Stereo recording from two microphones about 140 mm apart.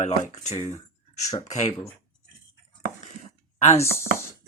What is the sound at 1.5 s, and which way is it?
Speech, 55° left (ahead or behind).